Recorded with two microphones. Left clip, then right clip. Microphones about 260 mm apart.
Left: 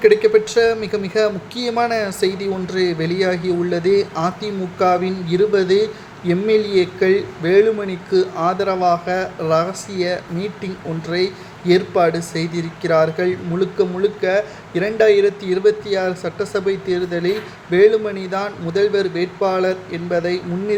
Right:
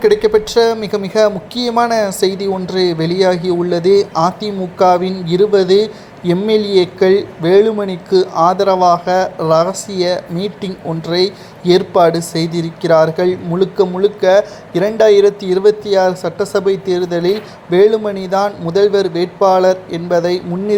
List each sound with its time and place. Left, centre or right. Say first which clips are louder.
0.0 s speech: right 1 dB; centre